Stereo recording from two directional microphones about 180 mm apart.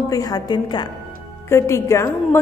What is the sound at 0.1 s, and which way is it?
A woman's voice, 20° left (ahead or behind).